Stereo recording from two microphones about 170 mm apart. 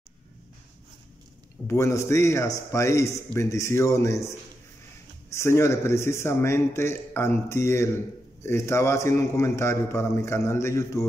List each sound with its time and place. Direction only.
1.7 s a man's voice: 15° left (ahead or behind)